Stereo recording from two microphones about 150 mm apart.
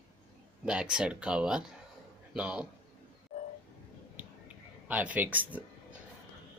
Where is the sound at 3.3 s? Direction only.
50° left (ahead or behind).